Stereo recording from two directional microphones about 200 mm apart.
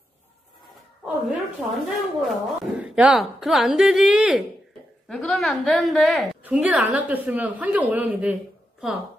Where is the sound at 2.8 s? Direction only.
5° right (ahead or behind).